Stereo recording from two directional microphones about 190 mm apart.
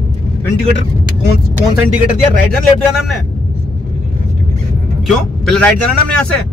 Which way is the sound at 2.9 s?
Centre (ahead or behind).